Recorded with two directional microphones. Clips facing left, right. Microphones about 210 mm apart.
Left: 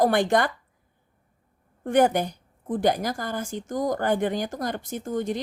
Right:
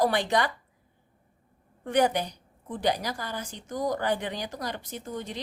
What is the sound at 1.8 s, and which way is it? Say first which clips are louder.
A woman's voice: left 4 dB; 50° left (ahead or behind).